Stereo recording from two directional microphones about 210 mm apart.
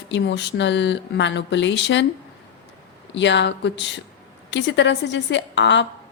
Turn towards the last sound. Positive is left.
turn(degrees=60)  # may be behind; listen again after turning